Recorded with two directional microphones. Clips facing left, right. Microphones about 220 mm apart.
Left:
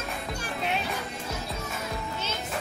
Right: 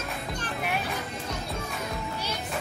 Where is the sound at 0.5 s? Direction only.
25° left (ahead or behind).